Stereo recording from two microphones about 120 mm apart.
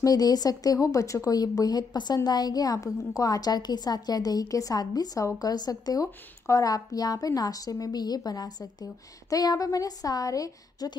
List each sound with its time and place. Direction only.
0.0 s a woman's voice: 35° left (ahead or behind)